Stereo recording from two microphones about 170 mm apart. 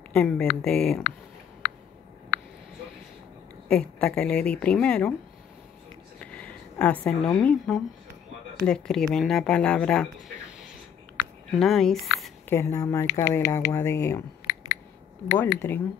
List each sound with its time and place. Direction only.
0.1 s a woman's voice: 5° left (ahead or behind)
3.6 s a woman's voice: 5° left (ahead or behind)
6.1 s a woman's voice: 5° left (ahead or behind)
11.5 s a woman's voice: centre (ahead or behind)
12.4 s speech: 15° left (ahead or behind)
15.3 s speech: 15° left (ahead or behind)